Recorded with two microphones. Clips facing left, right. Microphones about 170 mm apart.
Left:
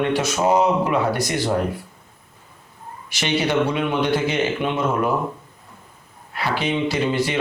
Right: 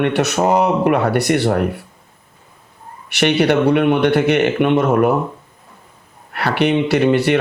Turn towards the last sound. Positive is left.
turn(degrees=-65)  # may be behind; listen again after turning